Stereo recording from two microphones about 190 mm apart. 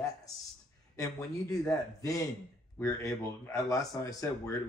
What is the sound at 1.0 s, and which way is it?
Speech, 15° left (ahead or behind).